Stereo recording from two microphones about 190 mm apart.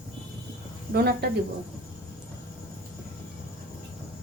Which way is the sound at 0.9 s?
55° right (ahead or behind).